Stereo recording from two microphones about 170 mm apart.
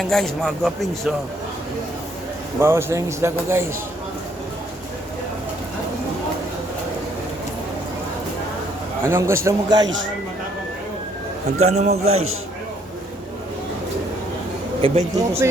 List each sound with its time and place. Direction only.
0.0 s speech: centre (ahead or behind)
2.6 s speech: 15° right (ahead or behind)
9.0 s speech: 15° right (ahead or behind)
11.6 s a man's voice: 40° right (ahead or behind)
14.8 s a man's voice: 35° right (ahead or behind)